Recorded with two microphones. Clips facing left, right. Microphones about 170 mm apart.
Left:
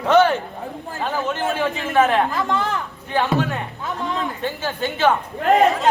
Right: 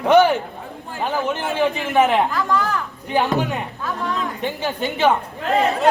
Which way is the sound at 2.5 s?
20° left (ahead or behind).